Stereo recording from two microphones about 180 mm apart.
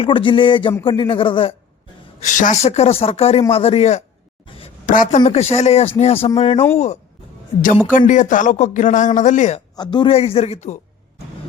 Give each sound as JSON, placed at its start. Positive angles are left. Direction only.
{"t": 0.0, "sound": "speech", "side_deg": 30}
{"t": 2.2, "sound": "speech", "side_deg": 45}
{"t": 4.4, "sound": "a sound", "side_deg": 30}
{"t": 4.9, "sound": "speech", "side_deg": 45}
{"t": 9.7, "sound": "speech", "side_deg": 25}